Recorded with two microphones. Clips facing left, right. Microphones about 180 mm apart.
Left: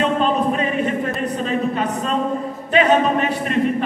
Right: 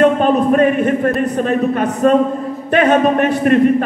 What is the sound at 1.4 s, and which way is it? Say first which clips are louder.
A man's voice: right 4 dB; 55° right (ahead or behind).